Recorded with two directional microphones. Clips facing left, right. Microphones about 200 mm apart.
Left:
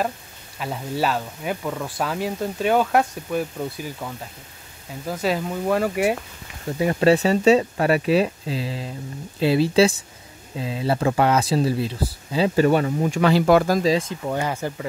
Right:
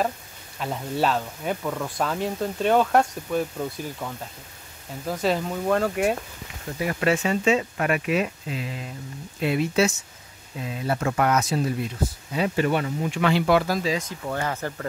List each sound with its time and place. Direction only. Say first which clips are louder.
0.6 s speech: even; centre (ahead or behind)
6.8 s speech: left 6 dB; 30° left (ahead or behind); by 13.9 s 45° left (ahead or behind)
13.9 s speech: left 5 dB; 25° left (ahead or behind)
14.3 s speech: left 2 dB; 15° left (ahead or behind)